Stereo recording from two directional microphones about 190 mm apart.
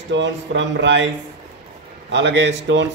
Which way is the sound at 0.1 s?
70° right (ahead or behind).